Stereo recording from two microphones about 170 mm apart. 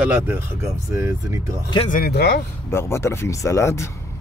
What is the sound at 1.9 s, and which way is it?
Speech, 60° left (ahead or behind).